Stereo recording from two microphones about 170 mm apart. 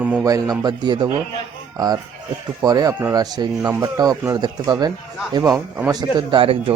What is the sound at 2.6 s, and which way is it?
A man's voice, 20° right (ahead or behind).